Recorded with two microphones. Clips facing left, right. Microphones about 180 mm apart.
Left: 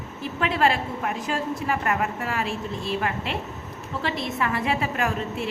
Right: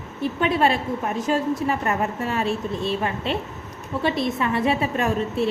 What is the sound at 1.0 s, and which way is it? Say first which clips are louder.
A woman's voice: right 5 dB; 25° right (ahead or behind).